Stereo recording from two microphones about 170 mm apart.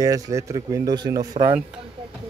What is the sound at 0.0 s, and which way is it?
Speech, 20° right (ahead or behind).